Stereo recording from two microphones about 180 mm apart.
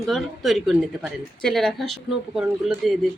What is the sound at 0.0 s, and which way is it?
A woman's voice, centre (ahead or behind).